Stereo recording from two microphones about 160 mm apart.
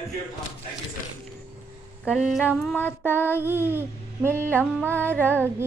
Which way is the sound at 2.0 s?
Centre (ahead or behind).